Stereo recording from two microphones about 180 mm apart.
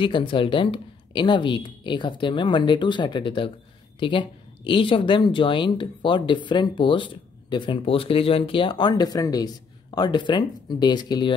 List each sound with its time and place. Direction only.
0.0 s speech: 25° left (ahead or behind)